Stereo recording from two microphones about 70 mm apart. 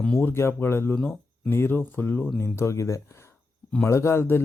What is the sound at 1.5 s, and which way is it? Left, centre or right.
Speech, left.